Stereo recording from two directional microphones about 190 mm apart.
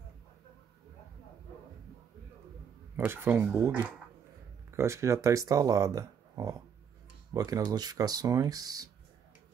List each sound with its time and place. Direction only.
3.0 s speech: 10° right (ahead or behind)